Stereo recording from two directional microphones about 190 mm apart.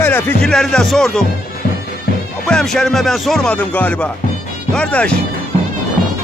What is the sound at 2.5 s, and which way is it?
Speech, 5° left (ahead or behind).